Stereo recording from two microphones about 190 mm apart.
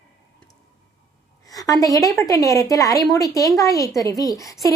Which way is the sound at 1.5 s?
20° left (ahead or behind).